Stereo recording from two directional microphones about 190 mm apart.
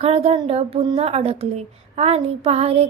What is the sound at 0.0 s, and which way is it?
Speech, 30° right (ahead or behind).